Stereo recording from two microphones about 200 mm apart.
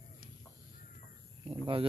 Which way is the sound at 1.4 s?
25° right (ahead or behind).